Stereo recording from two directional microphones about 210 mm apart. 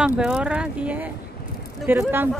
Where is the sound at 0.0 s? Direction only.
5° right (ahead or behind).